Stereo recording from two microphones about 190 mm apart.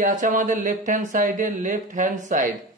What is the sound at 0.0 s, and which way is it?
Speech, 40° right (ahead or behind).